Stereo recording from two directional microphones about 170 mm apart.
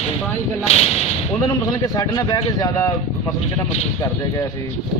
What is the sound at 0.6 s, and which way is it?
Speech, 40° left (ahead or behind).